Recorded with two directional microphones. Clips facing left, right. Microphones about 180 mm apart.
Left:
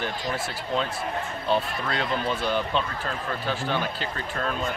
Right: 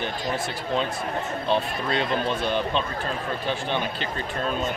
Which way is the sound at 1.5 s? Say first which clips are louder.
Right 1 dB; 20° right (ahead or behind).